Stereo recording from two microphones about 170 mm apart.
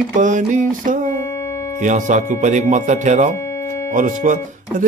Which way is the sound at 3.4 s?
15° left (ahead or behind).